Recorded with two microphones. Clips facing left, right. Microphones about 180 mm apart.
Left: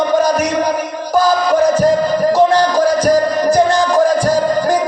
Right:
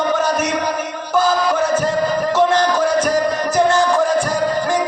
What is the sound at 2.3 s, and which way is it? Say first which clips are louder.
Music: left 4 dB; 35° left (ahead or behind).